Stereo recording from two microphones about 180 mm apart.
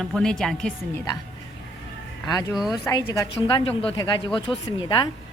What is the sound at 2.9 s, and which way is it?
Speech, 20° left (ahead or behind).